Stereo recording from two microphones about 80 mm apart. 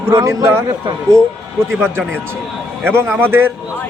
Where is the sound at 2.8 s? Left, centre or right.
Right.